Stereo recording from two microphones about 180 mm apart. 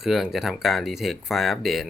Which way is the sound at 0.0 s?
Centre (ahead or behind).